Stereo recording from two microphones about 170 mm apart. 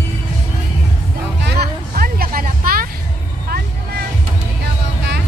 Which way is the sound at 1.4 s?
65° right (ahead or behind).